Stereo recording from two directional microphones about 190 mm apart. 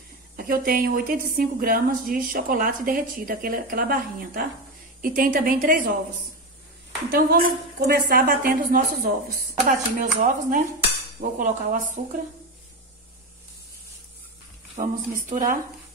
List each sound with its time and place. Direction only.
0.4 s a woman's voice: 50° right (ahead or behind)
7.1 s a woman's voice: 50° right (ahead or behind)
14.8 s a woman's voice: 45° right (ahead or behind)